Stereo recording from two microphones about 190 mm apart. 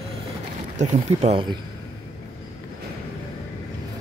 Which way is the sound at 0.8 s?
35° right (ahead or behind).